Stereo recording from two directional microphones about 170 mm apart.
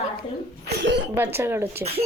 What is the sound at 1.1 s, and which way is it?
Speech, 15° right (ahead or behind).